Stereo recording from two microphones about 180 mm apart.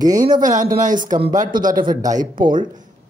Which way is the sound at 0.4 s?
45° right (ahead or behind).